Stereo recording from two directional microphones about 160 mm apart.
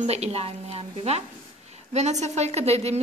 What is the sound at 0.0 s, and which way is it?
A woman's voice, 40° right (ahead or behind).